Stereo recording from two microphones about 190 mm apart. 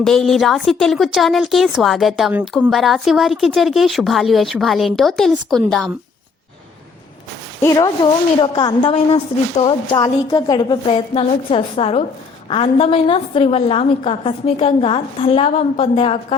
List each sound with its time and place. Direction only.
0.0 s a woman's voice: centre (ahead or behind)
7.6 s a woman's voice: 15° left (ahead or behind)